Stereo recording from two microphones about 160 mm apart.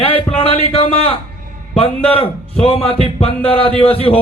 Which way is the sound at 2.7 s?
35° left (ahead or behind).